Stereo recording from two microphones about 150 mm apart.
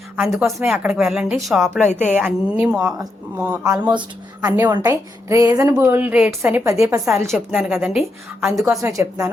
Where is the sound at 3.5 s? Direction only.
20° right (ahead or behind).